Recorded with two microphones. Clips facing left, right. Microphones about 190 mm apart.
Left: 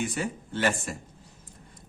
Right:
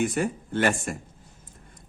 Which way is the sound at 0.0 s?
50° right (ahead or behind).